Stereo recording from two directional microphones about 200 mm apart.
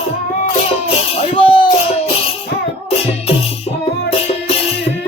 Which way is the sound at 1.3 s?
25° left (ahead or behind).